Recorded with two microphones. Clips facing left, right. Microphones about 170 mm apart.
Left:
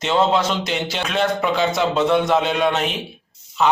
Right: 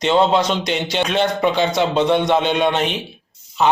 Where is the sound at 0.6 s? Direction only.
Centre (ahead or behind).